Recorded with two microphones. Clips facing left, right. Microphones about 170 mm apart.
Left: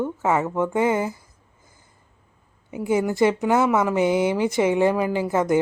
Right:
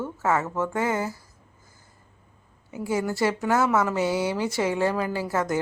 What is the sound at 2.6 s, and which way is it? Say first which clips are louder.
Speech: left 5 dB; 20° left (ahead or behind).